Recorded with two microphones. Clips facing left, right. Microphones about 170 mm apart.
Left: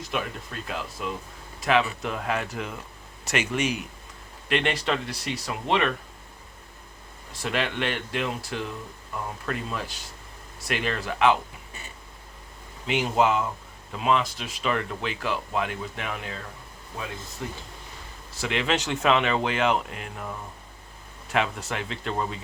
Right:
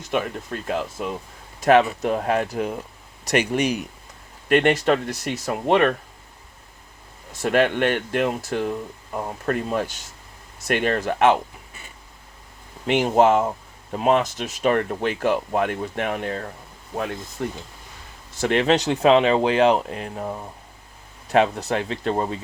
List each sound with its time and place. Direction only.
0.7 s speech: 50° right (ahead or behind)
7.4 s speech: 50° right (ahead or behind)
12.9 s speech: 45° right (ahead or behind)
18.3 s speech: 45° right (ahead or behind)